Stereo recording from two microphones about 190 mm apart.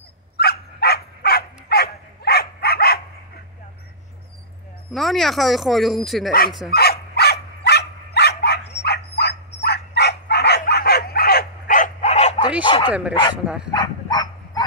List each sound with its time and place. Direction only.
0.4 s dog: 55° left (ahead or behind)
4.9 s speech: centre (ahead or behind)
6.7 s dog: 55° left (ahead or behind); by 12.4 s 35° left (ahead or behind)
12.6 s bow-wow: 25° left (ahead or behind)
13.7 s dog: 20° left (ahead or behind)